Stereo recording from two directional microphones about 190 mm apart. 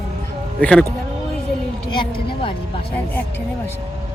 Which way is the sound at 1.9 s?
25° left (ahead or behind).